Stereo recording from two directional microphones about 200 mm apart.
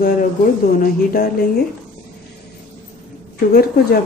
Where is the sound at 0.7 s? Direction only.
45° left (ahead or behind).